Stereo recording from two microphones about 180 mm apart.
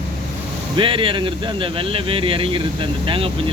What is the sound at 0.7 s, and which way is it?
Speech, 30° right (ahead or behind).